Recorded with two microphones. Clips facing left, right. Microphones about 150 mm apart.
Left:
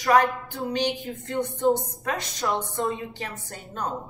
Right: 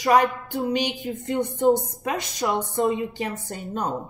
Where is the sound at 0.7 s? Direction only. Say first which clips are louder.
Even; 15° right (ahead or behind).